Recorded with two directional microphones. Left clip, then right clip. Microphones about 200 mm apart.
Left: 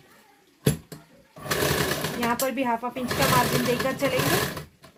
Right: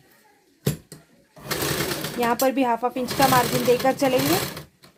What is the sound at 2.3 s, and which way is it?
Speech, 50° right (ahead or behind).